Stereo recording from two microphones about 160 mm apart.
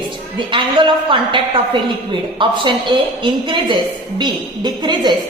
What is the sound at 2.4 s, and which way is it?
A woman's voice, 30° right (ahead or behind).